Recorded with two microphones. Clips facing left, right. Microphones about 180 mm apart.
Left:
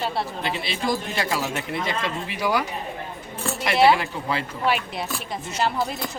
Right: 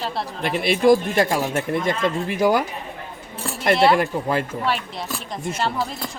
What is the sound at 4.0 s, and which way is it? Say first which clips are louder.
Speech: right 6 dB; 50° right (ahead or behind).